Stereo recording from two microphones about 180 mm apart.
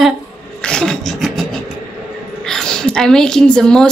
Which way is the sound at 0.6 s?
5° left (ahead or behind).